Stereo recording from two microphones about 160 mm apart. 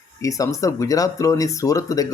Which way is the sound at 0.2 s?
20° left (ahead or behind).